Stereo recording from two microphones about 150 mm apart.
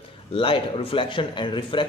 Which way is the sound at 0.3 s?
35° left (ahead or behind).